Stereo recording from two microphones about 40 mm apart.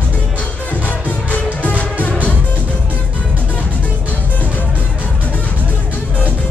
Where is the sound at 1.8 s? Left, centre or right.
Left.